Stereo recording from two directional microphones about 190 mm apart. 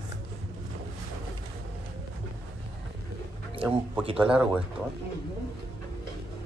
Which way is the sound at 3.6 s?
5° right (ahead or behind).